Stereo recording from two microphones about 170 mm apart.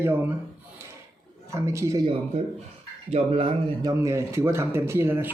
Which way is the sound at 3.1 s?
35° right (ahead or behind).